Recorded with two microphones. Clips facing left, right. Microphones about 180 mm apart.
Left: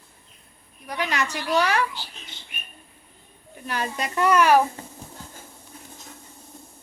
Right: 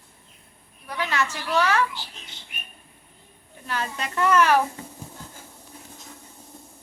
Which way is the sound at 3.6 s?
15° left (ahead or behind).